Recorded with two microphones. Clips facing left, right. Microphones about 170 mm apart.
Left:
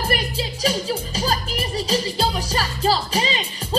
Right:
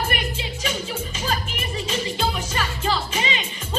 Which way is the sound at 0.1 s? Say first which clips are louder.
Left 4 dB; 35° left (ahead or behind).